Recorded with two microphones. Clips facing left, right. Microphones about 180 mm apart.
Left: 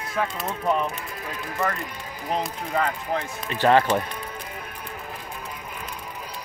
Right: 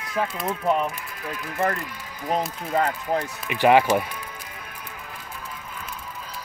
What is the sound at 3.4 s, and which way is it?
Speech, 15° right (ahead or behind).